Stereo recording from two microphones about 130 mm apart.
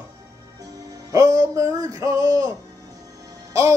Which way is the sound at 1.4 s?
25° right (ahead or behind).